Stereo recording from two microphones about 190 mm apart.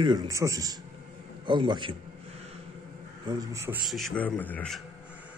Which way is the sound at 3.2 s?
15° right (ahead or behind).